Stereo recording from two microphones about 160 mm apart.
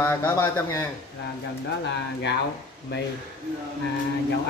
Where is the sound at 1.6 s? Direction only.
90° left.